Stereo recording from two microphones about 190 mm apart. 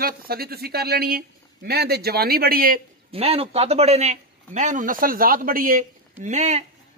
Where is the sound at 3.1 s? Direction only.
30° right (ahead or behind).